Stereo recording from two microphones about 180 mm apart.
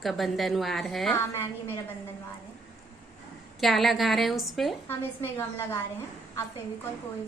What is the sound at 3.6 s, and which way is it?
A woman's voice, centre (ahead or behind).